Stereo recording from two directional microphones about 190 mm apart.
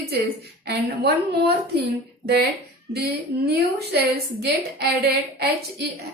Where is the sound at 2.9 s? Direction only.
60° right (ahead or behind).